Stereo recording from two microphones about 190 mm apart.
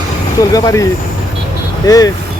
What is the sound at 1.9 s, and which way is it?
Speech, 20° left (ahead or behind).